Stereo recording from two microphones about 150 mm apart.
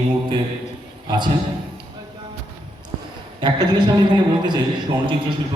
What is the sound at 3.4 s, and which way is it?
A man's voice, 25° right (ahead or behind).